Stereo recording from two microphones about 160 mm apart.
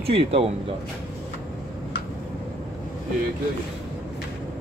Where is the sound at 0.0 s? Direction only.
35° right (ahead or behind).